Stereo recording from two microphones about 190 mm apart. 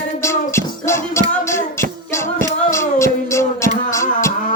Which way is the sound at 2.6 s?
15° left (ahead or behind).